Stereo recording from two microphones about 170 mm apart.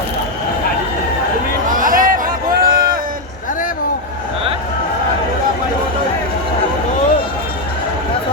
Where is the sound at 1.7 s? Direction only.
50° right (ahead or behind).